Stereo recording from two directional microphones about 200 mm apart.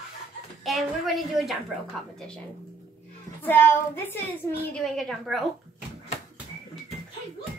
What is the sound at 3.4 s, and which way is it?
A woman's voice, 10° left (ahead or behind).